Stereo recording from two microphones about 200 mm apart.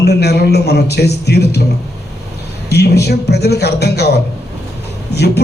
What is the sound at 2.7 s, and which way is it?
A man's voice, 55° left (ahead or behind).